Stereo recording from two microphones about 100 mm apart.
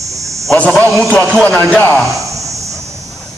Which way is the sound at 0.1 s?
30° right (ahead or behind).